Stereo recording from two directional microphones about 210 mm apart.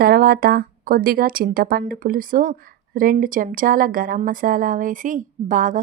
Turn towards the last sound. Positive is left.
turn(degrees=-40)  # may be behind; listen again after turning